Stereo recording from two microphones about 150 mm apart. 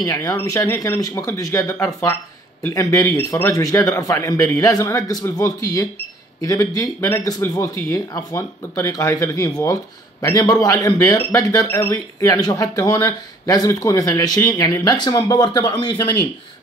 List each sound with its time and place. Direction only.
0.0 s speech: 25° left (ahead or behind)